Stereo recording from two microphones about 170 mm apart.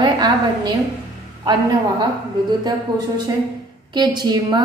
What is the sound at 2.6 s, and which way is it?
A woman's voice, 25° right (ahead or behind).